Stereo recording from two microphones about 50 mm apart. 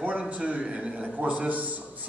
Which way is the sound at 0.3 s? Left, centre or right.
Right.